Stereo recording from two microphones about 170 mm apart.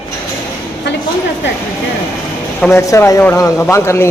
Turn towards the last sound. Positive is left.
turn(degrees=15)  # may be behind; listen again after turning